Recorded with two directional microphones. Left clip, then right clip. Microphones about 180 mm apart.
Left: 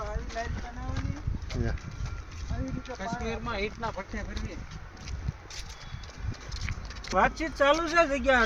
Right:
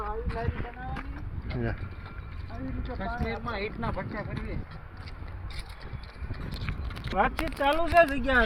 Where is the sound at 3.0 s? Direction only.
10° right (ahead or behind).